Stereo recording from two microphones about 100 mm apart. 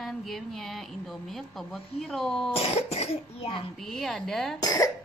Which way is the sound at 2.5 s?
90° left.